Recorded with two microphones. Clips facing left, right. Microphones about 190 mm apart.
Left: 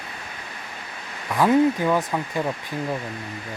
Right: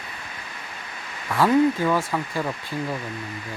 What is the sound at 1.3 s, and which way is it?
Speech, 15° left (ahead or behind).